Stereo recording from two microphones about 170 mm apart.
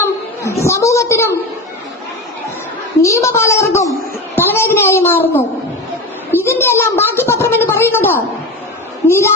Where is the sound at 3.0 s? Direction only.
15° left (ahead or behind).